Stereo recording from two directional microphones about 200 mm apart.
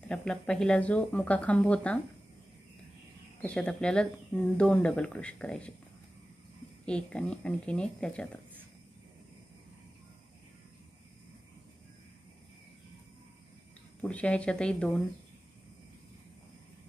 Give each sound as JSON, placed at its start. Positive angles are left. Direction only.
{"t": 0.1, "sound": "speech", "side_deg": 5}
{"t": 3.4, "sound": "speech", "side_deg": 5}
{"t": 6.9, "sound": "speech", "side_deg": 5}
{"t": 14.0, "sound": "speech", "side_deg": 5}